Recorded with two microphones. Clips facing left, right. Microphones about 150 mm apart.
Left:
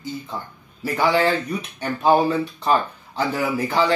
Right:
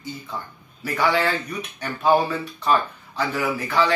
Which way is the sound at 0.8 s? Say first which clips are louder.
Left 3 dB; 20° left (ahead or behind).